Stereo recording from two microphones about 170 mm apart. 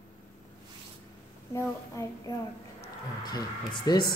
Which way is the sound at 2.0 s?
15° left (ahead or behind).